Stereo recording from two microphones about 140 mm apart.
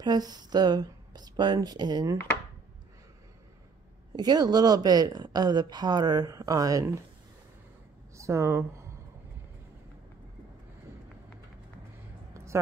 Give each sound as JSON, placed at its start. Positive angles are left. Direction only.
{"t": 0.0, "sound": "speech", "side_deg": -30}
{"t": 4.2, "sound": "speech", "side_deg": -30}
{"t": 8.2, "sound": "speech", "side_deg": -20}